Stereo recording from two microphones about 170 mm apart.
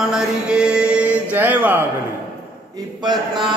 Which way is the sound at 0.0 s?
5° right (ahead or behind).